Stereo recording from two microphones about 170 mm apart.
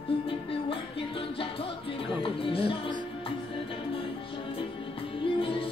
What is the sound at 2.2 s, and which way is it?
Music, 30° left (ahead or behind).